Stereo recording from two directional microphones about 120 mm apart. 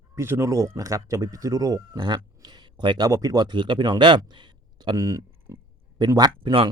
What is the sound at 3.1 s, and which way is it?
Speech, 25° right (ahead or behind).